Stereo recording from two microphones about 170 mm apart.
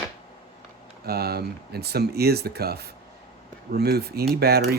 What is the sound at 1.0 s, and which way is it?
Speech, 65° right (ahead or behind).